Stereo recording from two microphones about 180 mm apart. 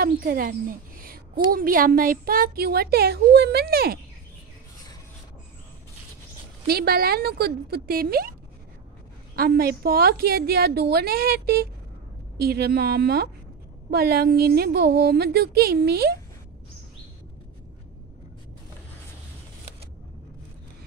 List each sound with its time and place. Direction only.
0.0 s a woman's voice: 55° right (ahead or behind)
6.7 s a woman's voice: 60° right (ahead or behind)